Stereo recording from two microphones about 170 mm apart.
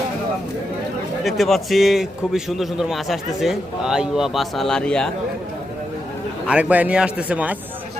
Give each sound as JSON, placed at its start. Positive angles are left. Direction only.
{"t": 1.2, "sound": "a man's voice", "side_deg": 0}
{"t": 6.5, "sound": "a man's voice", "side_deg": -10}